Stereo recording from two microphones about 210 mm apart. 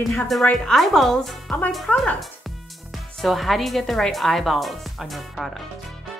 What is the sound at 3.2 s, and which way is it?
Speech, centre (ahead or behind).